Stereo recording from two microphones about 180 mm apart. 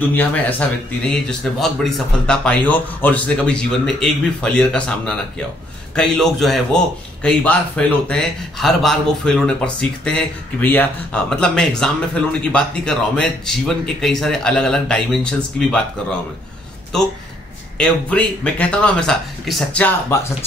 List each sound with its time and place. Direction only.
0.1 s a man's voice: 10° left (ahead or behind)
17.7 s speech: 5° left (ahead or behind)